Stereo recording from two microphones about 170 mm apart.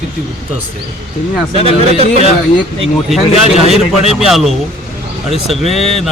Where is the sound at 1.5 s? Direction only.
35° right (ahead or behind).